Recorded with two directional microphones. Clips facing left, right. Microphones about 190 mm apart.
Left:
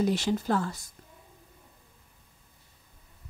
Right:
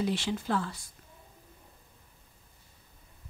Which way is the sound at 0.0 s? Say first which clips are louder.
Left 4 dB; 40° left (ahead or behind).